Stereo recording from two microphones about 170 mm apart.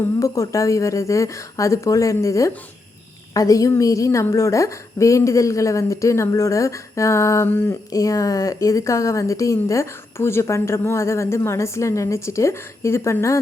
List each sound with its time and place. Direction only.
0.2 s a woman's voice: 20° left (ahead or behind)